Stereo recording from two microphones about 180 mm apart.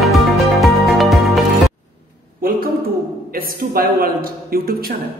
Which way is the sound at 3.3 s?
55° right (ahead or behind).